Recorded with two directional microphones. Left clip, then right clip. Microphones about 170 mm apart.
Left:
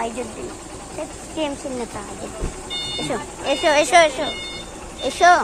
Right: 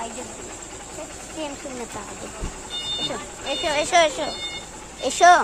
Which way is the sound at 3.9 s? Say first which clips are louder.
Left 4 dB; 10° right (ahead or behind).